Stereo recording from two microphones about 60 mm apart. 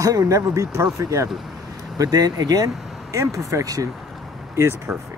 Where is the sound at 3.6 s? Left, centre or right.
Right.